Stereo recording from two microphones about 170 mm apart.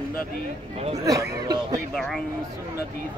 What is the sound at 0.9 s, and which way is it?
Speech, 20° right (ahead or behind).